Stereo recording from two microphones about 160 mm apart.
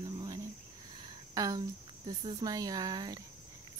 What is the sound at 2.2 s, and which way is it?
Speech, 30° right (ahead or behind).